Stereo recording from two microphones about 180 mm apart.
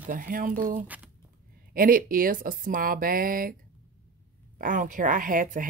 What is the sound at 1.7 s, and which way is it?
Speech, 50° right (ahead or behind).